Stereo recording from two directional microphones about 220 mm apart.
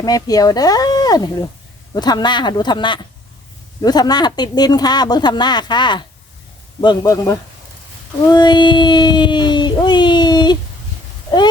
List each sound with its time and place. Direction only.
0.0 s speech: 15° left (ahead or behind)